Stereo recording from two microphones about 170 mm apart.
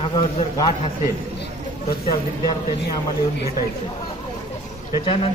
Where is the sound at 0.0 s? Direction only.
30° left (ahead or behind).